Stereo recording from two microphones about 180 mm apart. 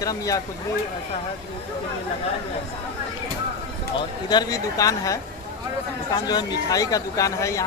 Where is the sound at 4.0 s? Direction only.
25° left (ahead or behind).